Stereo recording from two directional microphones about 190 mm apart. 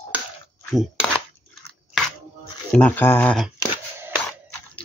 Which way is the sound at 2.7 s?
10° left (ahead or behind).